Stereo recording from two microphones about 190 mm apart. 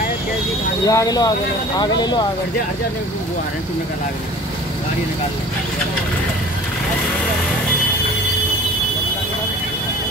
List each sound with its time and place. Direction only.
0.8 s speech: 20° left (ahead or behind)